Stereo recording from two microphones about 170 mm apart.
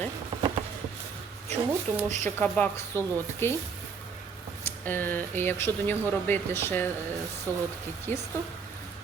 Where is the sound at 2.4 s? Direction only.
10° left (ahead or behind).